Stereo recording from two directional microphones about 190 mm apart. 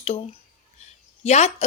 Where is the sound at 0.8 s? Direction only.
35° left (ahead or behind).